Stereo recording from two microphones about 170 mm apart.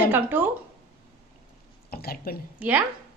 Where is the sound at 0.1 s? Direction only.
10° right (ahead or behind).